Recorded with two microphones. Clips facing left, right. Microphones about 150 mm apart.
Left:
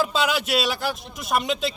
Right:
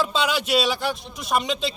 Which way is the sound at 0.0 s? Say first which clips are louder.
Even; 5° left (ahead or behind).